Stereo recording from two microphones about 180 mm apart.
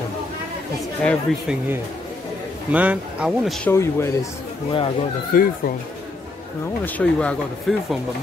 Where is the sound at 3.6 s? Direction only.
15° left (ahead or behind).